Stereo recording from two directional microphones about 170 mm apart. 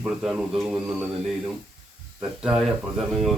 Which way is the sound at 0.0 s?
5° right (ahead or behind).